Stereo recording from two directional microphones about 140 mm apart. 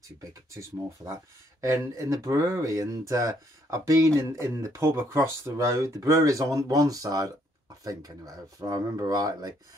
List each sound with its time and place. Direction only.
0.2 s speech: 20° right (ahead or behind)